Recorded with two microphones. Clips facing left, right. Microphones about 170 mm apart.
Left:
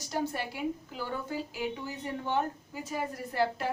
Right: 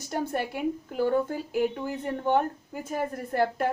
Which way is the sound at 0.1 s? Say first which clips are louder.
Right 4 dB; 55° right (ahead or behind).